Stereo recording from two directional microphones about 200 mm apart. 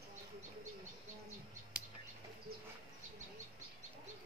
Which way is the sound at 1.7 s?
5° right (ahead or behind).